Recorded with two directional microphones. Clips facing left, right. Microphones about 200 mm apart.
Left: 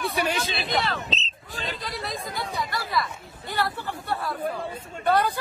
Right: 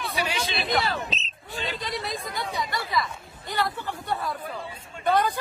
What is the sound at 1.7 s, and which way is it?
Speech, centre (ahead or behind).